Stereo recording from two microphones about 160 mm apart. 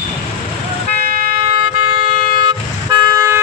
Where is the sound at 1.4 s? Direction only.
40° right (ahead or behind).